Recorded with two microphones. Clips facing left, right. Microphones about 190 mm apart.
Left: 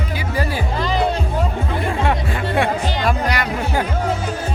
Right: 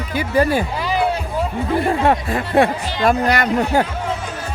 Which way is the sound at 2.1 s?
40° right (ahead or behind).